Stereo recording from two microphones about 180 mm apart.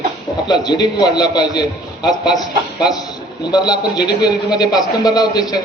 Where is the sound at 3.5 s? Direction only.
25° left (ahead or behind).